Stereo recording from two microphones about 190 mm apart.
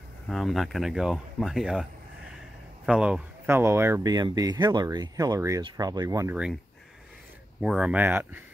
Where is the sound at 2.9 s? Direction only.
5° right (ahead or behind).